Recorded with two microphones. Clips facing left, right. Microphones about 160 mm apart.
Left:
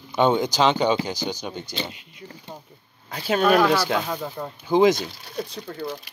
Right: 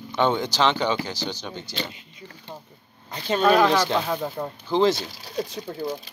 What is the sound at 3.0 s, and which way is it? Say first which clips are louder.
Speech: even; 5° left (ahead or behind).